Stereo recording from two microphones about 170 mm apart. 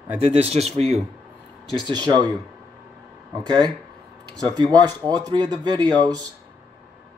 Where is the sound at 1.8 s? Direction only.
25° right (ahead or behind).